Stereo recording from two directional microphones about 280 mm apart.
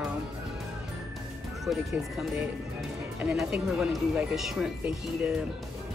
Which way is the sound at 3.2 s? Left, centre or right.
Centre.